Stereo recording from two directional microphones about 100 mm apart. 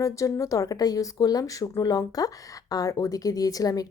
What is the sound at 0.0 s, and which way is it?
A woman's voice, 30° left (ahead or behind).